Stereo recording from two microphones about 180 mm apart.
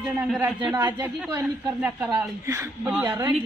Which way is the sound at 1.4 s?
10° right (ahead or behind).